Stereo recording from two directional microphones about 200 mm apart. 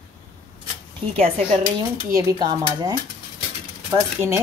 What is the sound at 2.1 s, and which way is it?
Dishes, 15° right (ahead or behind).